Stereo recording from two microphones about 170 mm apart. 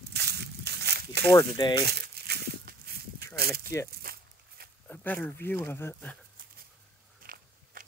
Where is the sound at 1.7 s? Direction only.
70° right (ahead or behind).